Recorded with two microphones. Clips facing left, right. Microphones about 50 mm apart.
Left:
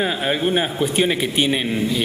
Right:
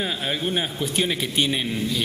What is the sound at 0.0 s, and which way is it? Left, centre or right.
A man's voice, left.